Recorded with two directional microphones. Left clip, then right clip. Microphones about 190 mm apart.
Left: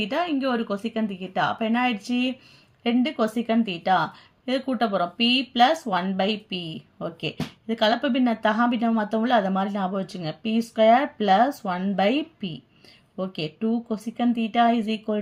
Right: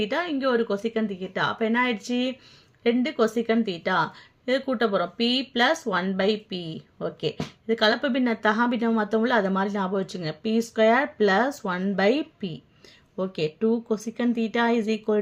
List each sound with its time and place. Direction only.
0.0 s a woman's voice: 15° right (ahead or behind)